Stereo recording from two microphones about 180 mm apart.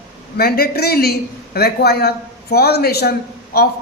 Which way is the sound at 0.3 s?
55° left (ahead or behind).